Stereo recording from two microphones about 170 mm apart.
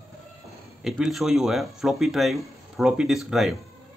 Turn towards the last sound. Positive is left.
turn(degrees=0)  # may be behind; listen again after turning